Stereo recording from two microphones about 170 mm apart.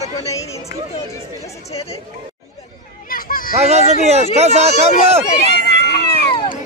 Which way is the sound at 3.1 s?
55° left (ahead or behind).